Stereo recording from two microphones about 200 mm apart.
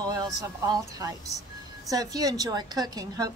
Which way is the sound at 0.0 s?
20° right (ahead or behind).